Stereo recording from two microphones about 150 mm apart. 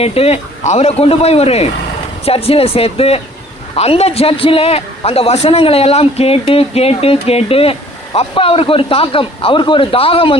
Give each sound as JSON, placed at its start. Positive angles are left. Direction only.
{"t": 0.0, "sound": "a man's voice", "side_deg": 40}